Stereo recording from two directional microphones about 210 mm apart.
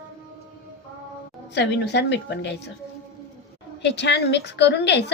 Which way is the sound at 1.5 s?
55° left (ahead or behind).